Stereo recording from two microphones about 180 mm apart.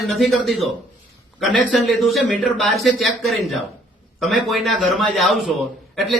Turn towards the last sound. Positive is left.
turn(degrees=0)  # may be behind; listen again after turning